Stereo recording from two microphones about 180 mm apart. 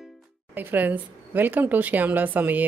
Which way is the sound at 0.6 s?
10° right (ahead or behind).